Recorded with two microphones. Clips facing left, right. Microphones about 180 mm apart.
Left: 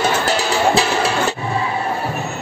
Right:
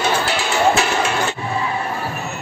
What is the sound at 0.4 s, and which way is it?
Music, 35° left (ahead or behind).